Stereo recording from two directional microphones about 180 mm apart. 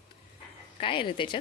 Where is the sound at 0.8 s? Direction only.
30° left (ahead or behind).